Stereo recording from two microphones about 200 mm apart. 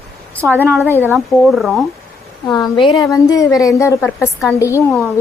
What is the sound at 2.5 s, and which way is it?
A woman's voice, 20° left (ahead or behind).